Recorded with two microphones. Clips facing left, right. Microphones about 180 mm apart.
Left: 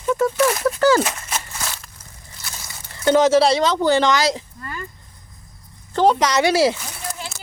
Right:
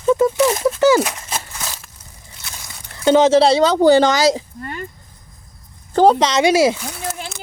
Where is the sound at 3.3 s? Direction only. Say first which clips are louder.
Right 3 dB; 30° right (ahead or behind).